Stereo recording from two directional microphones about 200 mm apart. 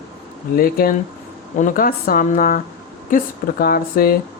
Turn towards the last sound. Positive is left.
turn(degrees=45)  # may be behind; listen again after turning